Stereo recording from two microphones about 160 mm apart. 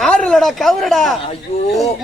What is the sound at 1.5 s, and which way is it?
Speech, 40° left (ahead or behind).